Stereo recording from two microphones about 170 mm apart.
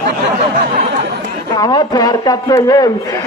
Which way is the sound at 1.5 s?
20° left (ahead or behind).